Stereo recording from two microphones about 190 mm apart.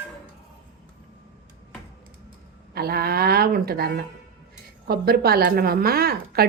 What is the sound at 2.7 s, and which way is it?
A woman's voice, 55° right (ahead or behind).